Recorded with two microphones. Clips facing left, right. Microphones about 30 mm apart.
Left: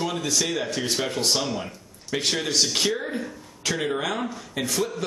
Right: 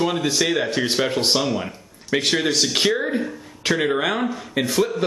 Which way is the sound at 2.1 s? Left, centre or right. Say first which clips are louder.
Right 4 dB; right.